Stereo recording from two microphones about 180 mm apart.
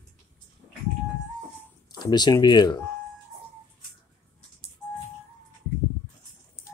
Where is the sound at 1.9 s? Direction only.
25° left (ahead or behind).